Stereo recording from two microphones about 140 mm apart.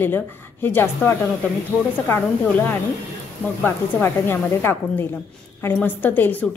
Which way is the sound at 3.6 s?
15° left (ahead or behind).